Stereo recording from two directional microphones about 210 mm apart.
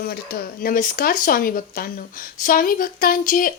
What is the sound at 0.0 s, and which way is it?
Speech, 45° left (ahead or behind).